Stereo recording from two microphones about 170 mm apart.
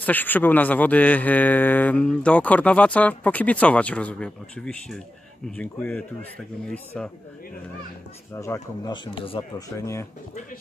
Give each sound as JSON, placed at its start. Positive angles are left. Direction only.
{"t": 0.0, "sound": "speech", "side_deg": 10}
{"t": 8.4, "sound": "speech", "side_deg": 20}
{"t": 9.8, "sound": "speech", "side_deg": 15}